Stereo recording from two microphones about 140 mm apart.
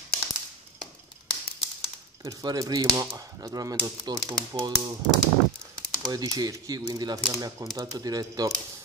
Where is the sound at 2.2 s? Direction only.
25° right (ahead or behind).